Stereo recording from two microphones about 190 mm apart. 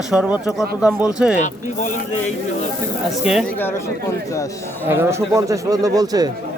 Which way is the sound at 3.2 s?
Centre (ahead or behind).